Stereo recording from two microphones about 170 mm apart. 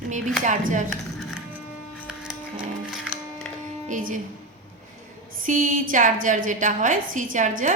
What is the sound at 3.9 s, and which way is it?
Speech, 50° right (ahead or behind).